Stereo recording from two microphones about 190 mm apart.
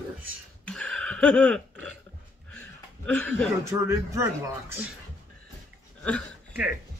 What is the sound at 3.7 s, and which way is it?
Speech, 15° right (ahead or behind).